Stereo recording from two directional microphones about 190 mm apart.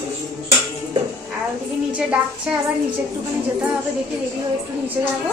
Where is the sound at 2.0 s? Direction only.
5° right (ahead or behind).